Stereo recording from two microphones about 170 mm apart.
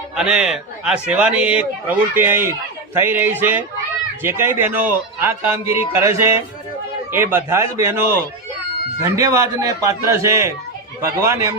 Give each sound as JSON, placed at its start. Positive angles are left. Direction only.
{"t": 0.2, "sound": "a man's voice", "side_deg": -5}
{"t": 9.0, "sound": "a man's voice", "side_deg": -20}